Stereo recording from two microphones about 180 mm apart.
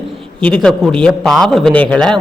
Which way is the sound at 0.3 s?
5° left (ahead or behind).